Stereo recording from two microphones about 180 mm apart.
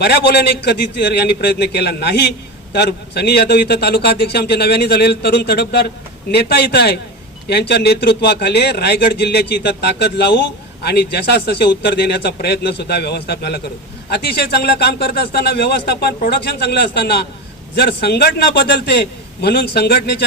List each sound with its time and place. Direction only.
0.0 s a man's voice: 65° left (ahead or behind)